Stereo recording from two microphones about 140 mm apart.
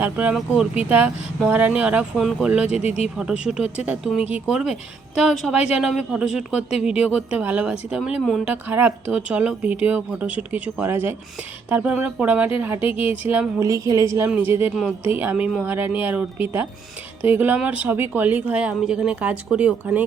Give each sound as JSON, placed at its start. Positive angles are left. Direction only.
{"t": 0.0, "sound": "speech", "side_deg": -10}
{"t": 2.7, "sound": "speech", "side_deg": 50}
{"t": 3.2, "sound": "speech", "side_deg": -5}
{"t": 12.9, "sound": "a woman's voice", "side_deg": 40}
{"t": 13.2, "sound": "speech", "side_deg": -15}